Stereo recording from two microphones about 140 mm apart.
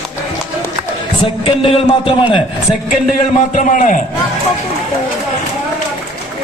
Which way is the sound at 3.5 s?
65° left (ahead or behind).